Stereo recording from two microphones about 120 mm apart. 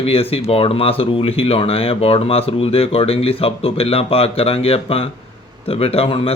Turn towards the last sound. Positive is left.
turn(degrees=55)  # may be behind; listen again after turning